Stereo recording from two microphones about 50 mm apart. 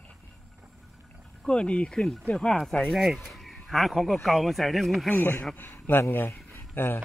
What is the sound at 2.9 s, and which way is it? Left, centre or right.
Speech, centre.